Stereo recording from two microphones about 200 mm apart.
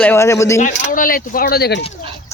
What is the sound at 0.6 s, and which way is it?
Speech, 40° left (ahead or behind).